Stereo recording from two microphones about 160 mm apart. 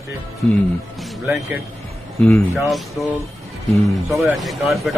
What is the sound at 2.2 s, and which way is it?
Speech, 10° left (ahead or behind).